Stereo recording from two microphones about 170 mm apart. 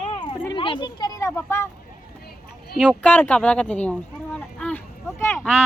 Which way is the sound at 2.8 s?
5° left (ahead or behind).